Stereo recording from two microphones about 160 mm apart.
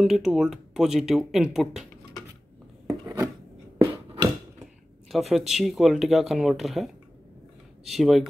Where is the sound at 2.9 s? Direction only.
20° right (ahead or behind).